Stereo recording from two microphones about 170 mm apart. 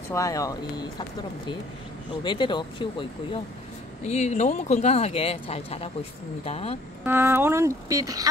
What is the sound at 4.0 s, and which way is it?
Speech, 40° left (ahead or behind).